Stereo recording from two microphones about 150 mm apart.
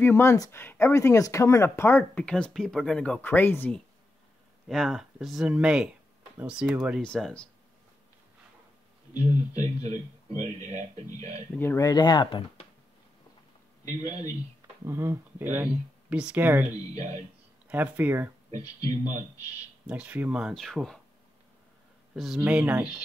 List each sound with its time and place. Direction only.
0.0 s speech: 15° left (ahead or behind)
4.6 s speech: centre (ahead or behind)
7.0 s speech: 5° left (ahead or behind)
9.1 s speech: 25° left (ahead or behind)
10.4 s speech: 55° right (ahead or behind)
11.5 s speech: 15° left (ahead or behind); by 12.6 s 35° left (ahead or behind)
14.9 s speech: 15° right (ahead or behind)
17.6 s speech: 10° right (ahead or behind)
18.6 s speech: 25° left (ahead or behind)
19.9 s speech: 10° right (ahead or behind)
22.1 s speech: centre (ahead or behind)